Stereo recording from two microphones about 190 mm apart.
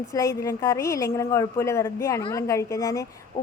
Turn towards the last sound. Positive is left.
turn(degrees=15)  # may be behind; listen again after turning